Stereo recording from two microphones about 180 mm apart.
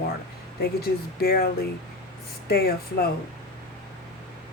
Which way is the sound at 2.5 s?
60° left (ahead or behind).